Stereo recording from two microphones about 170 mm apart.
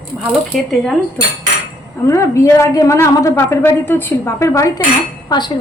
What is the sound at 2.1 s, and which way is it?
A woman's voice, 15° left (ahead or behind).